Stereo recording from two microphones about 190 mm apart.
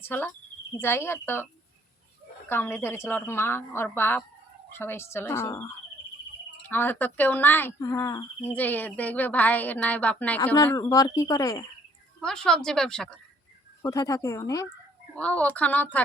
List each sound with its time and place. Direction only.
0.0 s speech: 10° left (ahead or behind)
2.5 s speech: 10° left (ahead or behind)
12.2 s a woman's voice: 5° left (ahead or behind)
13.8 s speech: 15° left (ahead or behind)